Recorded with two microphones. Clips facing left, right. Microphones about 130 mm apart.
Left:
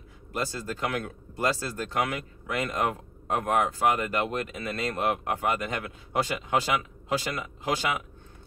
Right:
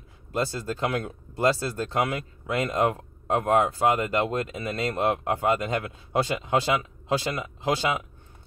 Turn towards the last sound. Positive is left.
turn(degrees=-20)  # may be behind; listen again after turning